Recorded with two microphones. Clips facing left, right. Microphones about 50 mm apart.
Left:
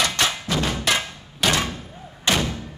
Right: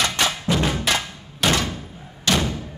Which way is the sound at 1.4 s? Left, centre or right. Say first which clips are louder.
Right 1 dB; centre.